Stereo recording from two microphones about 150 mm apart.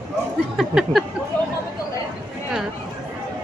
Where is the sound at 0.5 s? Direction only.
Centre (ahead or behind).